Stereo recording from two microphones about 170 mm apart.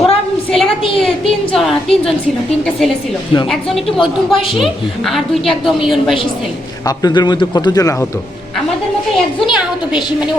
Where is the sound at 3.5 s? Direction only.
Centre (ahead or behind).